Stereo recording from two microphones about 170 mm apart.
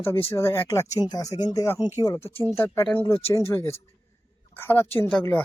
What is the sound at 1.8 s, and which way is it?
Speech, 15° right (ahead or behind).